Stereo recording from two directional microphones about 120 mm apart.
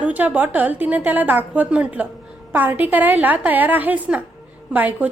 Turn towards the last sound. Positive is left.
turn(degrees=-15)  # may be behind; listen again after turning